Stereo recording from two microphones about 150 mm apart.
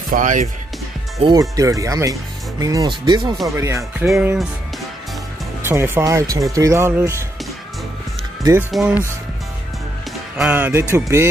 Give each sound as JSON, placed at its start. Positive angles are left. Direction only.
{"t": 0.1, "sound": "speech", "side_deg": -60}
{"t": 1.2, "sound": "speech", "side_deg": -25}
{"t": 3.4, "sound": "speech", "side_deg": -20}
{"t": 5.6, "sound": "speech", "side_deg": -15}
{"t": 8.7, "sound": "speech", "side_deg": -10}
{"t": 10.3, "sound": "speech", "side_deg": -10}